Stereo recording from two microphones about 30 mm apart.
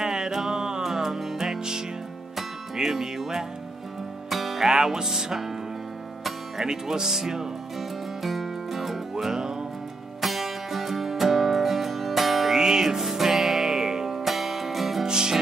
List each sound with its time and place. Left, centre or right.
0.0 s music: centre
1.6 s music: right; by 4.6 s centre
4.9 s speech: centre
6.6 s speech: centre
8.2 s music: centre
9.2 s music: centre
10.2 s music: centre
12.5 s music: centre
15.0 s music: right